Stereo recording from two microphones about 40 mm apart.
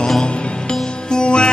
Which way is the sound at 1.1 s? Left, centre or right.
Left.